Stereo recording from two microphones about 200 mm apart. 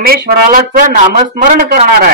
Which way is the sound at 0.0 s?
50° right (ahead or behind).